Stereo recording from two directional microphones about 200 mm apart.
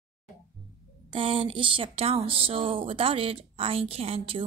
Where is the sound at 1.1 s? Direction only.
25° right (ahead or behind).